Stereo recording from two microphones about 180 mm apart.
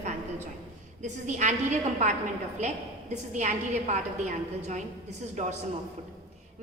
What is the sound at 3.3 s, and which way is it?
A woman's voice, 40° right (ahead or behind).